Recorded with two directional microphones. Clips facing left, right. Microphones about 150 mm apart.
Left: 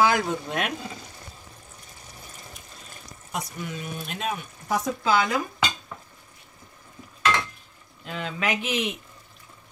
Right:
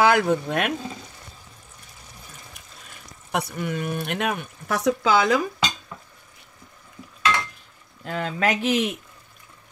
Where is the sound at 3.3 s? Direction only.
60° right (ahead or behind); by 5.3 s 85° right.